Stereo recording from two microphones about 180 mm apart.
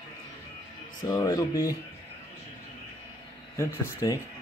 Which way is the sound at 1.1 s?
20° left (ahead or behind).